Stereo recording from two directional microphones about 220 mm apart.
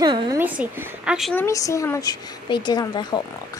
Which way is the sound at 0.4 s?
10° right (ahead or behind).